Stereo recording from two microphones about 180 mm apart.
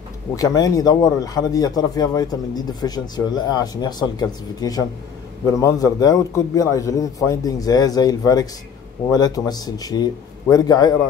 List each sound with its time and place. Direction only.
0.4 s speech: 20° left (ahead or behind)